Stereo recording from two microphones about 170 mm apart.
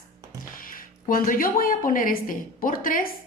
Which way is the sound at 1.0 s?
55° left (ahead or behind).